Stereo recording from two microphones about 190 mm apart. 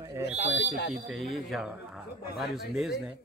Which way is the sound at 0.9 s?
Centre (ahead or behind).